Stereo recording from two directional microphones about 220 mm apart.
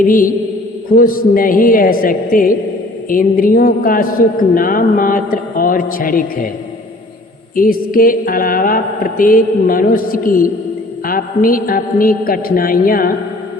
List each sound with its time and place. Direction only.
0.0 s a man's voice: 40° left (ahead or behind)
7.5 s a man's voice: 40° left (ahead or behind)